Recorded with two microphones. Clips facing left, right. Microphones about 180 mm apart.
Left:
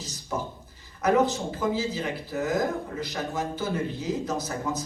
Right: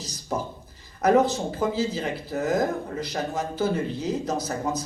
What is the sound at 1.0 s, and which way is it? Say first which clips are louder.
Speech: right 3 dB; 40° right (ahead or behind).